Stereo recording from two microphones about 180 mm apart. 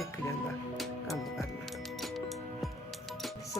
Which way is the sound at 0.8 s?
Centre (ahead or behind).